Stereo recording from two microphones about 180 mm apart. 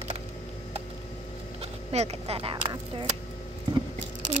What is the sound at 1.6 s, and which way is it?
Speech, 35° right (ahead or behind).